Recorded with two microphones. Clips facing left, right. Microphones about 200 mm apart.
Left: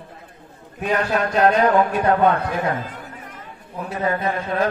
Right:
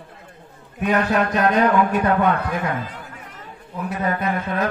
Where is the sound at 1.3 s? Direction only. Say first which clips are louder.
Left 5 dB; 30° left (ahead or behind).